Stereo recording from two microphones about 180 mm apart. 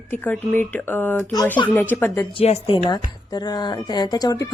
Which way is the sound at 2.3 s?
30° left (ahead or behind).